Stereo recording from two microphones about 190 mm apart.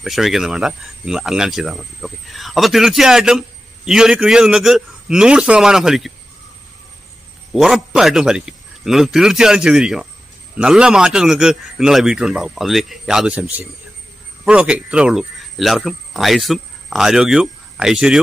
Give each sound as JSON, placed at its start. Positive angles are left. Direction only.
{"t": 0.0, "sound": "speech", "side_deg": 0}
{"t": 7.5, "sound": "speech", "side_deg": 0}